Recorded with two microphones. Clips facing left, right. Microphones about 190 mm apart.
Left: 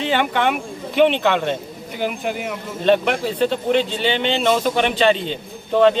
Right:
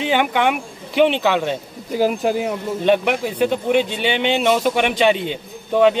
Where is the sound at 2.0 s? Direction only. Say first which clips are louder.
Right 6 dB; 35° right (ahead or behind).